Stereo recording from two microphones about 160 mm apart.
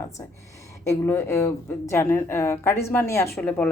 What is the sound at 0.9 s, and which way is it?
A woman's voice, 15° left (ahead or behind).